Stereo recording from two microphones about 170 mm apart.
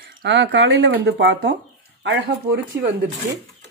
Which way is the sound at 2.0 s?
75° right (ahead or behind).